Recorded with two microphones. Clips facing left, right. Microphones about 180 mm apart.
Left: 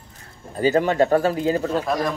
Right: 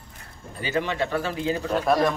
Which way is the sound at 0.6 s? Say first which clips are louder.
Left 8 dB; 40° left (ahead or behind).